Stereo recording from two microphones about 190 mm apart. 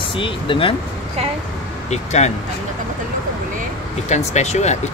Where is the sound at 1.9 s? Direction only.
35° left (ahead or behind).